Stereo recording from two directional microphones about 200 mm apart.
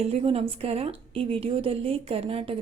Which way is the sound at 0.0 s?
30° right (ahead or behind).